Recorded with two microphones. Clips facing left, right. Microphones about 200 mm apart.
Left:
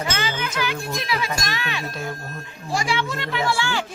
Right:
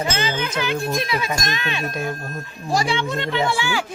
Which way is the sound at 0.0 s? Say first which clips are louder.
Right 3 dB; 20° right (ahead or behind).